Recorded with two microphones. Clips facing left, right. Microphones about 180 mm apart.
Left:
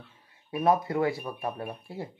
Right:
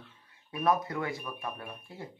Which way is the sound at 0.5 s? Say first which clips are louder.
Left 4 dB; 25° left (ahead or behind).